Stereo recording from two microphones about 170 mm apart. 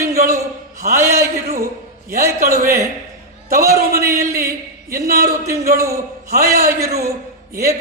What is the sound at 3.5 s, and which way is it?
Speech, 60° right (ahead or behind).